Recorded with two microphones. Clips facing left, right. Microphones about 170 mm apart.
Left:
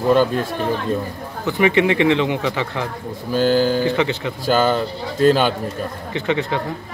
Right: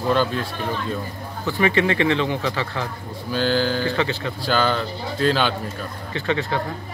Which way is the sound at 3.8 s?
20° left (ahead or behind).